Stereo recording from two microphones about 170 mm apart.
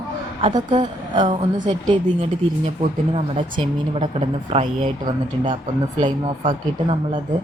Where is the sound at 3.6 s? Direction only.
40° right (ahead or behind).